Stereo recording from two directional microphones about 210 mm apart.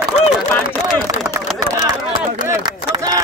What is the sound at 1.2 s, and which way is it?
Speech, 15° right (ahead or behind).